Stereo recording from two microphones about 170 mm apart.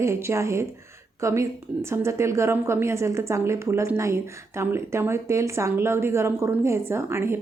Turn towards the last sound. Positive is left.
turn(degrees=-15)  # may be behind; listen again after turning